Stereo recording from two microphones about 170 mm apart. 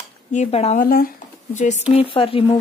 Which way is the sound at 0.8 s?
55° left (ahead or behind).